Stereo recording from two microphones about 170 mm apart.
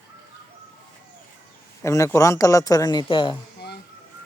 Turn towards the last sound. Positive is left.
turn(degrees=30)  # may be behind; listen again after turning